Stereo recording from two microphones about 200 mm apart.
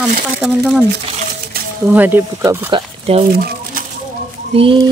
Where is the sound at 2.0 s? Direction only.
10° right (ahead or behind).